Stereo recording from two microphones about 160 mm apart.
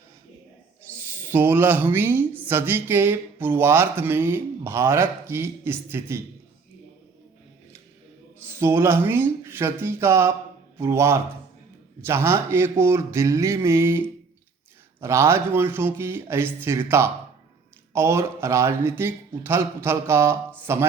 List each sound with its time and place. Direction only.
0.8 s a woman's voice: 15° right (ahead or behind)
8.4 s a woman's voice: 15° right (ahead or behind)
15.0 s a woman's voice: 15° right (ahead or behind)